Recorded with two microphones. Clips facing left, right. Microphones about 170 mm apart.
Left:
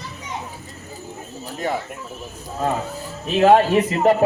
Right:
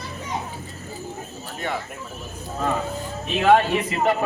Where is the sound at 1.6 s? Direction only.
35° left (ahead or behind).